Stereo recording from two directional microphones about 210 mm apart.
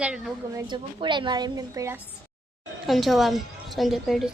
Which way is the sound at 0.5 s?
20° right (ahead or behind).